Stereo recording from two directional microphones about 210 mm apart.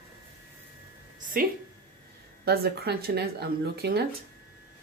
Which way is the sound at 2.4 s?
50° right (ahead or behind).